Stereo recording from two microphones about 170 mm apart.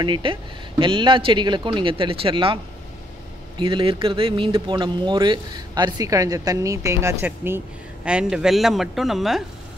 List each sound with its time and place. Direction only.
0.0 s speech: 30° right (ahead or behind); by 9.4 s centre (ahead or behind)